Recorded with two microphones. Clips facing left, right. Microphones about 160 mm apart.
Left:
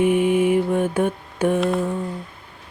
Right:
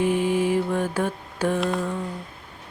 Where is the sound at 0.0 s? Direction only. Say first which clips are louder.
Left 4 dB; 20° left (ahead or behind).